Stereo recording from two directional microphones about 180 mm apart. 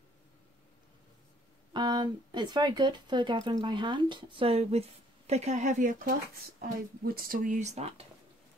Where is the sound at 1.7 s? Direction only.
25° right (ahead or behind).